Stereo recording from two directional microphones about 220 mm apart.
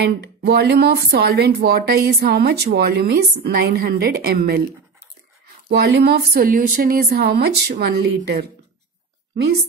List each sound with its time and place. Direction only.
0.0 s speech: 50° right (ahead or behind)
5.7 s speech: 50° right (ahead or behind)